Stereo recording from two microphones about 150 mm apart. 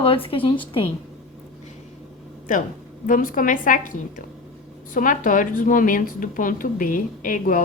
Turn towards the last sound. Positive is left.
turn(degrees=65)  # may be behind; listen again after turning